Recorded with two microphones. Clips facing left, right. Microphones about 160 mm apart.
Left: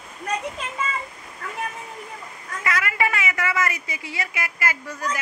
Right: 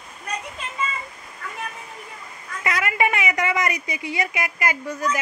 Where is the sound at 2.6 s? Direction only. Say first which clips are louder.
Right 2 dB; 20° right (ahead or behind).